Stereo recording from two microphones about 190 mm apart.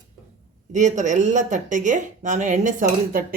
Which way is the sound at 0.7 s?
40° right (ahead or behind).